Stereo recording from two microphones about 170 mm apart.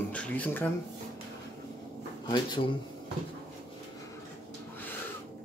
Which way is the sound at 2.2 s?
25° left (ahead or behind).